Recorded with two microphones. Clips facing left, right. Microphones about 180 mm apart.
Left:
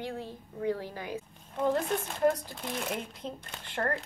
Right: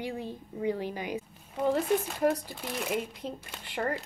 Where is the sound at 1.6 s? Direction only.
5° right (ahead or behind).